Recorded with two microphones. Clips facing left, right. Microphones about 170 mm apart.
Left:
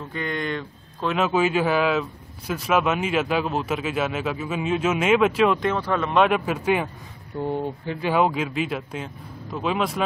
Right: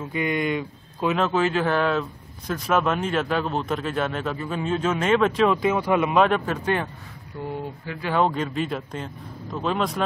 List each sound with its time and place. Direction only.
0.0 s speech: 10° right (ahead or behind)
1.1 s speech: 10° left (ahead or behind); by 6.1 s 10° right (ahead or behind)
6.1 s speech: 5° left (ahead or behind)
7.3 s speech: 25° left (ahead or behind)
8.1 s speech: 5° left (ahead or behind)